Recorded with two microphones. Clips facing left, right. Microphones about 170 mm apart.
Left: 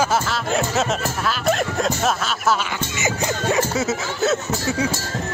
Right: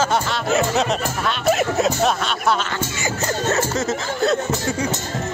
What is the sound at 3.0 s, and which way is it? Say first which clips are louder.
Speech: left 1 dB; 10° left (ahead or behind).